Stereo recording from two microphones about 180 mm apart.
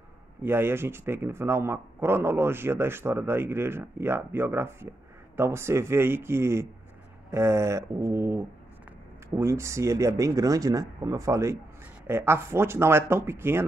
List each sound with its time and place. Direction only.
0.4 s speech: 10° right (ahead or behind)